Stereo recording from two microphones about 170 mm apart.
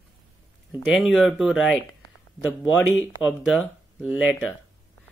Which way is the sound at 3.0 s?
5° right (ahead or behind).